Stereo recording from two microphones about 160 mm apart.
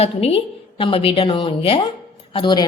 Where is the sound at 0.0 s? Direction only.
40° left (ahead or behind).